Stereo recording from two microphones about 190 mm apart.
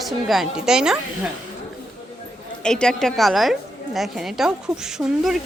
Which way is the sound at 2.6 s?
5° left (ahead or behind).